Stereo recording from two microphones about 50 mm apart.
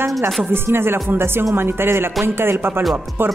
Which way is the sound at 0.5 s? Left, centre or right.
Right.